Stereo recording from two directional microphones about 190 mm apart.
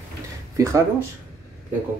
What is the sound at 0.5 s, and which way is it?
Speech, 15° right (ahead or behind).